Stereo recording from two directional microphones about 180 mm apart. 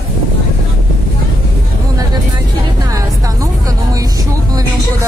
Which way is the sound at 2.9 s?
20° right (ahead or behind).